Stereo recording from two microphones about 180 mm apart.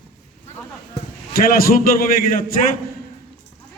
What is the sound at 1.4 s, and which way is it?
A man's voice, 55° left (ahead or behind).